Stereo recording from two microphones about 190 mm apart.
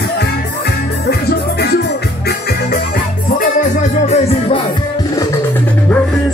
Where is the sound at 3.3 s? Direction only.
40° left (ahead or behind).